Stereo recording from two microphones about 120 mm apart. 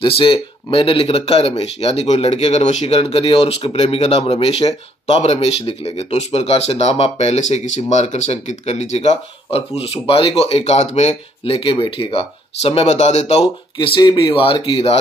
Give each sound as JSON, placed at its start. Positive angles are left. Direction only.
{"t": 0.0, "sound": "speech", "side_deg": 45}
{"t": 13.7, "sound": "speech", "side_deg": 40}